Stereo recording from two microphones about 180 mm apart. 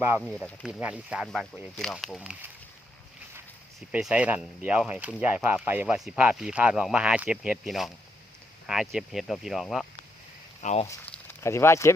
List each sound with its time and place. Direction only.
0.2 s speech: centre (ahead or behind)
3.8 s speech: 5° right (ahead or behind)
10.6 s speech: 40° left (ahead or behind)
10.8 s speech: 10° left (ahead or behind)